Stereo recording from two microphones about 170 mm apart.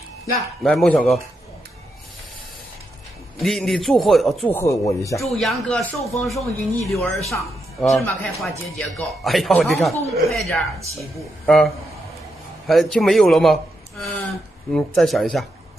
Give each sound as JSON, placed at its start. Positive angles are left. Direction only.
{"t": 0.7, "sound": "speech", "side_deg": 5}
{"t": 3.3, "sound": "speech", "side_deg": 0}
{"t": 4.5, "sound": "speech", "side_deg": 15}
{"t": 5.2, "sound": "speech", "side_deg": 0}